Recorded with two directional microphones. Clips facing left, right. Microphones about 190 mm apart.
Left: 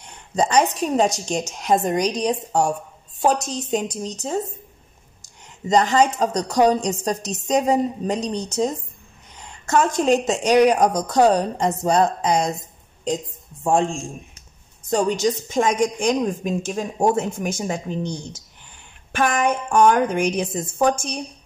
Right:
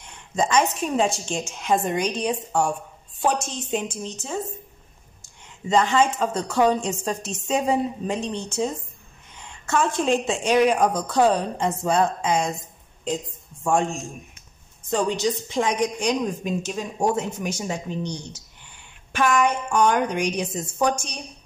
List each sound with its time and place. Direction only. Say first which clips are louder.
0.0 s a woman's voice: left 3 dB; 35° left (ahead or behind)
14.9 s a woman's voice: left 3 dB; 45° left (ahead or behind)